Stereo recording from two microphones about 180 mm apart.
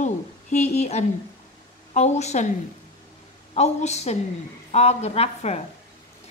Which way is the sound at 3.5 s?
40° left (ahead or behind).